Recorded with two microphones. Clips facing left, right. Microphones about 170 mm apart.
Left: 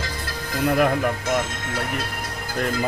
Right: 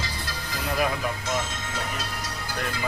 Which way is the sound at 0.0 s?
50° left (ahead or behind).